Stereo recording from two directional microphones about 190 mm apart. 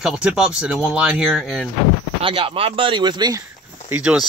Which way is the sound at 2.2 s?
30° right (ahead or behind).